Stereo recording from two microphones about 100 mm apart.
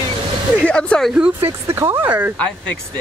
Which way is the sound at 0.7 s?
10° left (ahead or behind).